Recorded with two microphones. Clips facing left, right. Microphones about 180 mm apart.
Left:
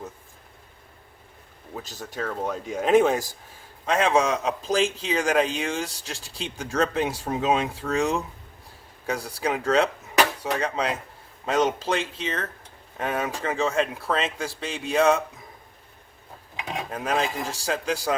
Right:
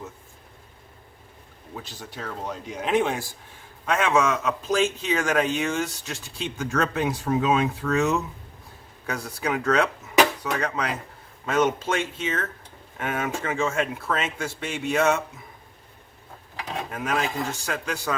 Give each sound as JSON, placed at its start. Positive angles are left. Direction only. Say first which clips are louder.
{"t": 1.7, "sound": "a man's voice", "louder": "left 3 dB", "side_deg": 45}
{"t": 16.9, "sound": "a man's voice", "louder": "left 1 dB", "side_deg": 30}